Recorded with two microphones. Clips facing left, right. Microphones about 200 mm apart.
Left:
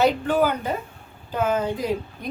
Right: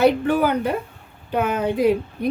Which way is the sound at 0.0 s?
60° right (ahead or behind).